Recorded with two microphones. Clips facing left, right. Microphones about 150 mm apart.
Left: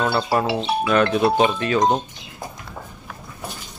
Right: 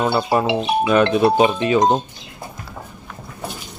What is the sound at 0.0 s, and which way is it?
Speech, 15° right (ahead or behind).